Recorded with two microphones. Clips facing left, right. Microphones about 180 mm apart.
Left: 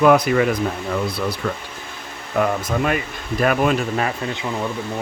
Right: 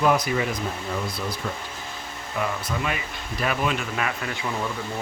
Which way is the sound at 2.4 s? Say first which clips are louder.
Left 8 dB; 50° left (ahead or behind).